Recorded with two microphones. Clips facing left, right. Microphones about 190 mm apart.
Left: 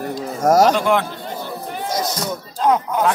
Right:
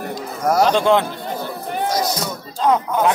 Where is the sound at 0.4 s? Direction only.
45° left (ahead or behind).